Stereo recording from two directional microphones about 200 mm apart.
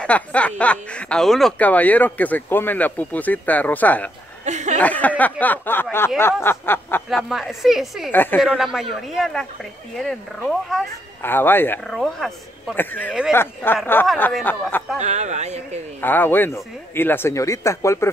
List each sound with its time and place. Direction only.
0.0 s speech: 5° left (ahead or behind)
4.5 s a sound: 35° right (ahead or behind)
4.7 s speech: 10° left (ahead or behind)
7.1 s a woman's voice: centre (ahead or behind)
8.1 s speech: 10° left (ahead or behind)
8.4 s a woman's voice: centre (ahead or behind)
11.2 s speech: 10° left (ahead or behind)
15.0 s speech: 35° right (ahead or behind)
16.0 s speech: 10° left (ahead or behind)